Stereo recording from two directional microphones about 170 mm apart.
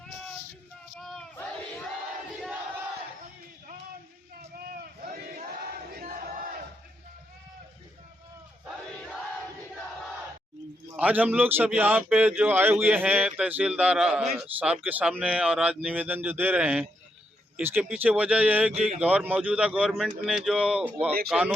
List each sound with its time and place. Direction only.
0.9 s battle cry: centre (ahead or behind)
4.5 s a sound: 60° right (ahead or behind)
5.5 s battle cry: 60° right (ahead or behind)
10.9 s a man's voice: 10° right (ahead or behind)
17.9 s a man's voice: 10° right (ahead or behind)